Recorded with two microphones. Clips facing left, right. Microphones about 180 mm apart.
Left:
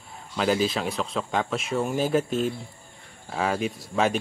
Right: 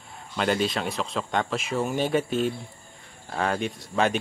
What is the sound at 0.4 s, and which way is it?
Speech, centre (ahead or behind).